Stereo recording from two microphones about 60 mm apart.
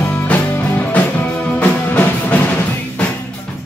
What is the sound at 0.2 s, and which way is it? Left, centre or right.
Music, left.